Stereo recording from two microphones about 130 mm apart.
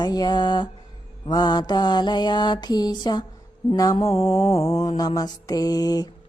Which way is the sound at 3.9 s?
55° left (ahead or behind).